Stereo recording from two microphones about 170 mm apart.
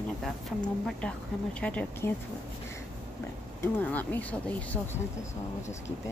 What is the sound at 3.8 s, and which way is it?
Speech, 10° left (ahead or behind).